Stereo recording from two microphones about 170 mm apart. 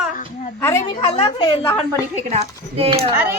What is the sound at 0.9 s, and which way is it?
Speech, 30° left (ahead or behind).